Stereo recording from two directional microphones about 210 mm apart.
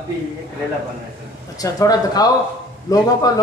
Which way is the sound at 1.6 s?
15° left (ahead or behind).